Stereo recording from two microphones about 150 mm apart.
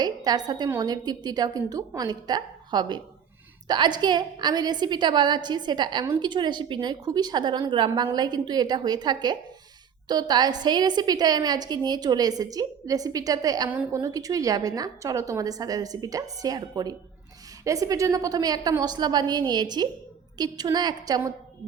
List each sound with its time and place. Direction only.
0.0 s a woman's voice: 25° right (ahead or behind)
13.7 s a woman's voice: 10° right (ahead or behind)
14.0 s a woman's voice: 25° right (ahead or behind)